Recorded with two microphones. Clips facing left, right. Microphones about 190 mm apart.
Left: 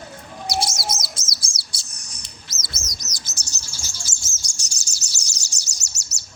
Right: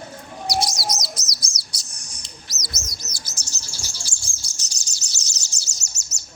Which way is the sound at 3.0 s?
15° right (ahead or behind).